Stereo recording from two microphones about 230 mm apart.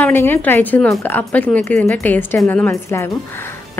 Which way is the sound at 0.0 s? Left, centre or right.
Centre.